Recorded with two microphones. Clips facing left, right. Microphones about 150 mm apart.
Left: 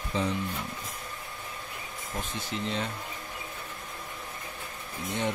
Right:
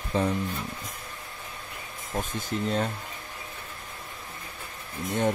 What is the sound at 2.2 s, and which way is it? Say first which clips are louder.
Speech: right 5 dB; 45° right (ahead or behind).